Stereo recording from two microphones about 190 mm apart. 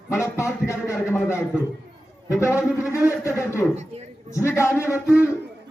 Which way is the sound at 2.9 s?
15° left (ahead or behind).